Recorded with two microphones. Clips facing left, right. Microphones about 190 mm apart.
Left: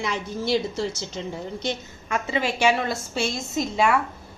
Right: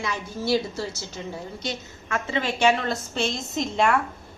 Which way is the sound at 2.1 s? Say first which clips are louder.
Left 1 dB; 10° left (ahead or behind).